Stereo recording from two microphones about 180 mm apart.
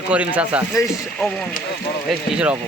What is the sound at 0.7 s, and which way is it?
Speech, 15° left (ahead or behind).